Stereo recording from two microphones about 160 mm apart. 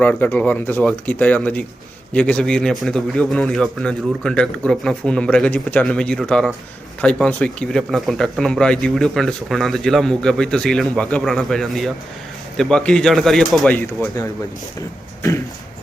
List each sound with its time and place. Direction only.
0.0 s speech: 10° left (ahead or behind)
13.7 s speech: 15° left (ahead or behind)
14.8 s a sound: 20° left (ahead or behind)